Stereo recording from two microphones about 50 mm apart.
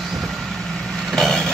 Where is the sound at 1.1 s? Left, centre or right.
Centre.